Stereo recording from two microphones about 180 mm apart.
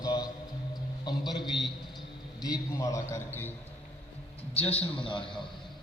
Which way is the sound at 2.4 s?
20° left (ahead or behind).